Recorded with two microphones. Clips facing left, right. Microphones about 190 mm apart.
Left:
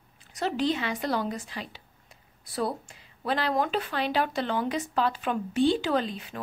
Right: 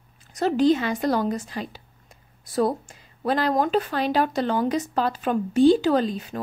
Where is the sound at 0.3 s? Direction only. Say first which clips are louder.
Right 8 dB; 40° right (ahead or behind).